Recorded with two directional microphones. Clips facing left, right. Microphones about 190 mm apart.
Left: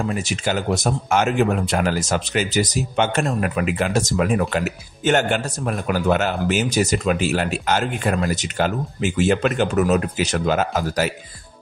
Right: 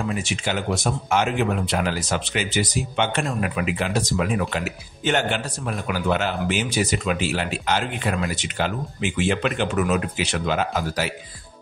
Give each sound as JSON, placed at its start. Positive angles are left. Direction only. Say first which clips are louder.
{"t": 0.0, "sound": "speech", "louder": "left 3 dB", "side_deg": 40}